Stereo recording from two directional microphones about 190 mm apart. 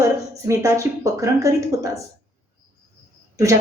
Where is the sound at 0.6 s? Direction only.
15° right (ahead or behind).